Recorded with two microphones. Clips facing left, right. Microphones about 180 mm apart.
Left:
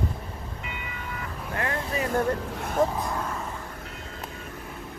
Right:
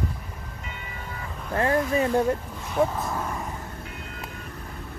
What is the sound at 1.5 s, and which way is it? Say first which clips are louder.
Speech: right 7 dB; 30° right (ahead or behind).